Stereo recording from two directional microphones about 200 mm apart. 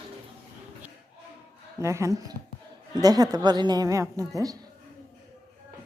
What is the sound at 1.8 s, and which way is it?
A woman's voice, 15° right (ahead or behind).